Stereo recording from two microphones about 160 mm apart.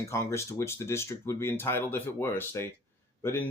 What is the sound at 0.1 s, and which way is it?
Speech, 15° left (ahead or behind).